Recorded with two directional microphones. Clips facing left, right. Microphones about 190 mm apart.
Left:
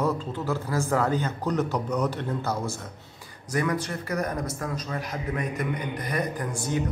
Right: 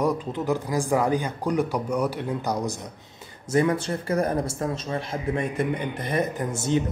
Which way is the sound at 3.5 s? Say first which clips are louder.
Right 5 dB; 25° right (ahead or behind).